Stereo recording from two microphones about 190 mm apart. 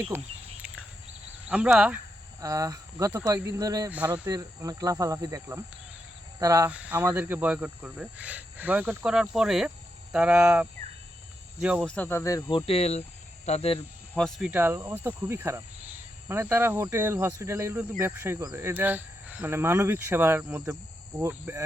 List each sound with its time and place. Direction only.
0.1 s speech: 10° right (ahead or behind)
1.5 s speech: 5° right (ahead or behind)
2.4 s speech: 20° right (ahead or behind)
6.7 s speech: 5° right (ahead or behind); by 13.7 s 35° left (ahead or behind)
14.2 s speech: centre (ahead or behind)
14.5 s speech: 15° right (ahead or behind)